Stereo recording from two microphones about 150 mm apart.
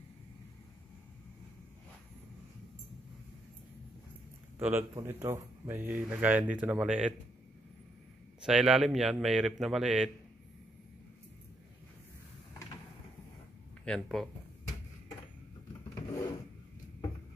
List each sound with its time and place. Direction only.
4.6 s speech: 15° right (ahead or behind)
8.4 s a man's voice: 5° right (ahead or behind)
13.8 s a man's voice: centre (ahead or behind)
15.9 s a sound: 20° left (ahead or behind)